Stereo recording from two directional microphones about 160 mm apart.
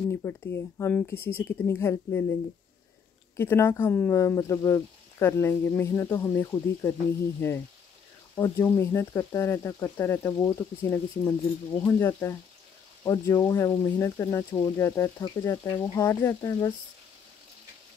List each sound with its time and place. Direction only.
0.1 s speech: 15° left (ahead or behind)
3.3 s speech: 15° left (ahead or behind)